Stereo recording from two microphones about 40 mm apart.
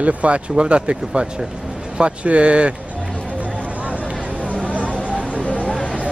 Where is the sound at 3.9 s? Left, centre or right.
Right.